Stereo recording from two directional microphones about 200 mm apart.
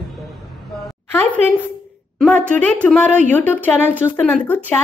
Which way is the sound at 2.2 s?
5° left (ahead or behind).